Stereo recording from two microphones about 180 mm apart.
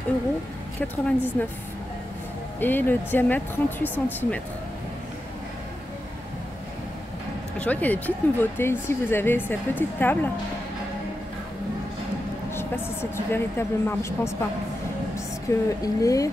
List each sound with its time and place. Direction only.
0.7 s speech: 10° left (ahead or behind)
2.6 s speech: 10° left (ahead or behind)
7.5 s speech: 10° left (ahead or behind)
12.5 s speech: 15° left (ahead or behind)
15.5 s speech: 15° left (ahead or behind)